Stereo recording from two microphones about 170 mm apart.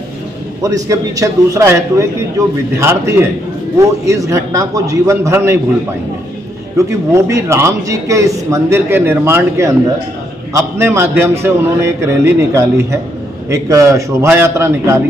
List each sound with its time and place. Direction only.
0.6 s a man's voice: 20° right (ahead or behind)
7.2 s a man's voice: 15° right (ahead or behind)